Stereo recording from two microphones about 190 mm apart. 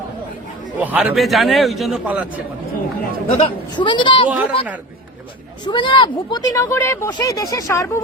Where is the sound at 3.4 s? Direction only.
25° left (ahead or behind).